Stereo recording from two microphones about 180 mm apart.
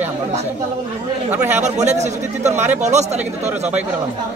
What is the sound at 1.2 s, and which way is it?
Speech, 10° right (ahead or behind).